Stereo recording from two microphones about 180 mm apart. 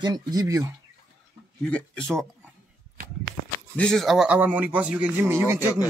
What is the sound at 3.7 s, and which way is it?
Speech, 5° left (ahead or behind).